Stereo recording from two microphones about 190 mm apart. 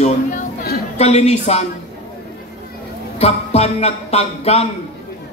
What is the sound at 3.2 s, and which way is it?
Speech, 35° left (ahead or behind).